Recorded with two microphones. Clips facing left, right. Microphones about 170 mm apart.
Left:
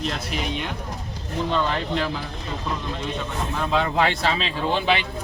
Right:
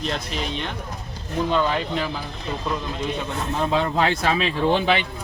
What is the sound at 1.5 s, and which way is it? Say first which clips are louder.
Speech: right 2 dB; 5° right (ahead or behind).